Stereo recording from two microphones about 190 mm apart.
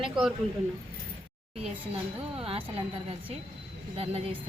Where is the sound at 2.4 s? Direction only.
30° right (ahead or behind).